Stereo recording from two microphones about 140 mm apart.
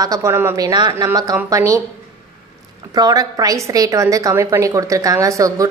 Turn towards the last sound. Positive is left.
turn(degrees=-25)  # may be behind; listen again after turning